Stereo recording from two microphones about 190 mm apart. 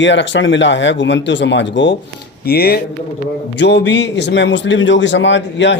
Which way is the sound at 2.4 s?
55° left (ahead or behind).